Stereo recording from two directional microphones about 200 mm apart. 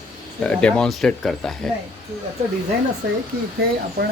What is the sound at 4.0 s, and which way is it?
Speech, 50° right (ahead or behind).